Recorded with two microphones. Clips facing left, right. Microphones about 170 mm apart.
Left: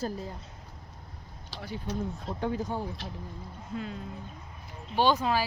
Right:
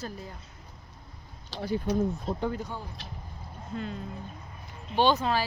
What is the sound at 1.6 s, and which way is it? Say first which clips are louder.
Speech: right 9 dB; 40° right (ahead or behind).